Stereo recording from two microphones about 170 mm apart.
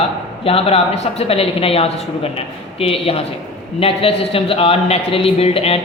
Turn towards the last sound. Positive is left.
turn(degrees=35)  # may be behind; listen again after turning